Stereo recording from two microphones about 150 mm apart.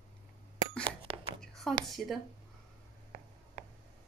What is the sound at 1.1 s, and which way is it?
Whispering, 35° right (ahead or behind).